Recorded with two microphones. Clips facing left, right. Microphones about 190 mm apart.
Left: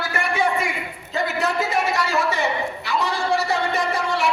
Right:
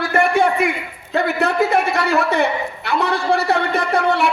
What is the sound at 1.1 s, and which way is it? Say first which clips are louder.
A man's voice: right 5 dB; 60° right (ahead or behind).